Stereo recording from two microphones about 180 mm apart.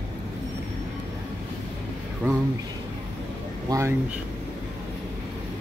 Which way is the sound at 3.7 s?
15° right (ahead or behind).